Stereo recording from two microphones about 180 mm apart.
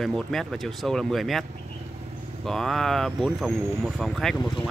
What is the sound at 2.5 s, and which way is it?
Speech, centre (ahead or behind).